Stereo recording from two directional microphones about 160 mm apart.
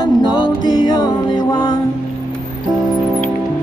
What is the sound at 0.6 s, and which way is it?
Music, 25° left (ahead or behind).